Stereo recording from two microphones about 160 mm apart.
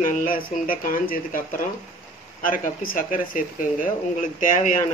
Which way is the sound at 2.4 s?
60° left (ahead or behind).